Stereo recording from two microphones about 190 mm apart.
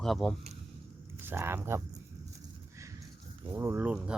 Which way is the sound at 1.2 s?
10° right (ahead or behind).